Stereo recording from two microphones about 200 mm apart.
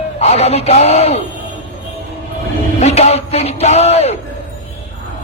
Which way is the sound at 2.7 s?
35° left (ahead or behind).